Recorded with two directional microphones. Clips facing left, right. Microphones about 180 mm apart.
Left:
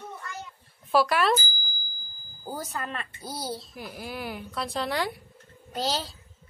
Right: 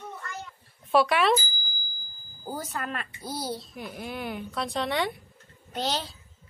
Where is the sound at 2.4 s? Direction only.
Centre (ahead or behind).